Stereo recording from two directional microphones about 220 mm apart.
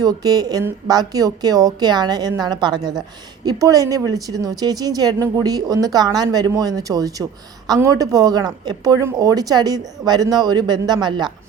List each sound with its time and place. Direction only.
0.0 s a woman's voice: 15° right (ahead or behind)